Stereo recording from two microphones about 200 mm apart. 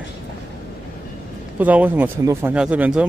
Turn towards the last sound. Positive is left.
turn(degrees=-5)  # may be behind; listen again after turning